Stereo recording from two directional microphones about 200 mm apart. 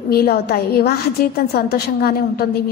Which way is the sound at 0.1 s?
50° left (ahead or behind).